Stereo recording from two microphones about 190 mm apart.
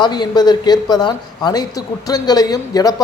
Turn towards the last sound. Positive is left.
turn(degrees=20)  # may be behind; listen again after turning